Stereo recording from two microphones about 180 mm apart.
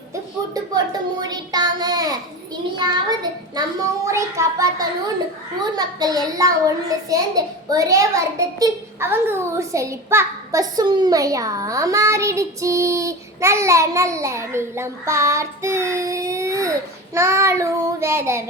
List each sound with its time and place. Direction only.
1.2 s child singing: 20° right (ahead or behind)
2.7 s a child's voice: 25° right (ahead or behind)